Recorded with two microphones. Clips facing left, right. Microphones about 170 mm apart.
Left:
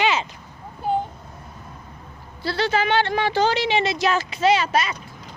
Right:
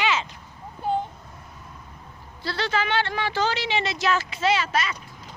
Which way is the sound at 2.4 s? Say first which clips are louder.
Left 5 dB; 10° left (ahead or behind).